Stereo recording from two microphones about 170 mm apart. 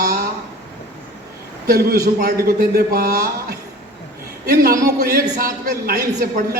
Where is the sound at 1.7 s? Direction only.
65° right (ahead or behind).